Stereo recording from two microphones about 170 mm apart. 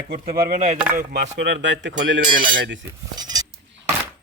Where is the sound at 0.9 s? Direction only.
70° right (ahead or behind); by 2.2 s 90° right.